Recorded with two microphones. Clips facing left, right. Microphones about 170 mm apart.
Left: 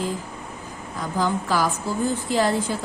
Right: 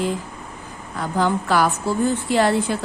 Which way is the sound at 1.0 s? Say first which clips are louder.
Right 3 dB; 65° right (ahead or behind).